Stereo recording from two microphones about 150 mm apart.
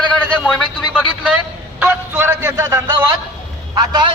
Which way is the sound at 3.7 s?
30° right (ahead or behind).